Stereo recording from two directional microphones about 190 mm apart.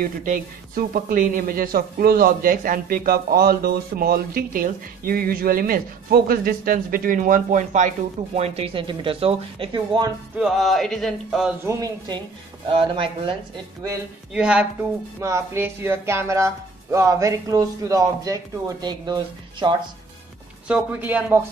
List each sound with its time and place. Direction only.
0.0 s speech: 45° right (ahead or behind); by 10.1 s 25° right (ahead or behind)
10.3 s music: centre (ahead or behind)
11.6 s speech: 20° right (ahead or behind)
14.3 s music: 5° right (ahead or behind)
15.1 s speech: 15° right (ahead or behind)
20.6 s speech: 5° right (ahead or behind)